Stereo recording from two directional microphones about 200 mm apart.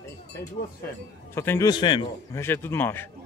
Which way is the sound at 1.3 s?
10° left (ahead or behind).